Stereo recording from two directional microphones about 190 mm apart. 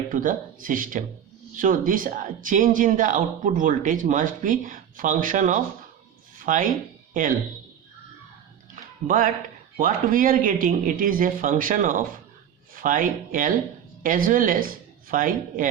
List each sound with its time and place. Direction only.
0.1 s speech: 45° right (ahead or behind)
9.0 s speech: 45° right (ahead or behind)